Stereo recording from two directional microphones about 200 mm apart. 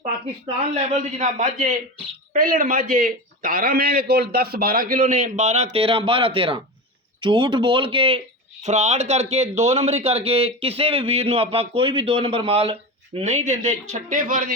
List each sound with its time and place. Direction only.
0.7 s a man's voice: 35° right (ahead or behind)